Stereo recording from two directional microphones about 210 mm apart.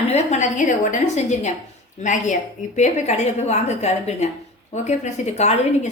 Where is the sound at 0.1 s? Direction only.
30° left (ahead or behind).